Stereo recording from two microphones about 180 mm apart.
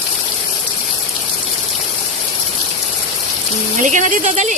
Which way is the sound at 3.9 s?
45° right (ahead or behind).